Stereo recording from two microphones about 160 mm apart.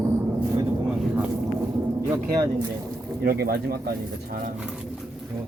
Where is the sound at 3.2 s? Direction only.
70° right (ahead or behind).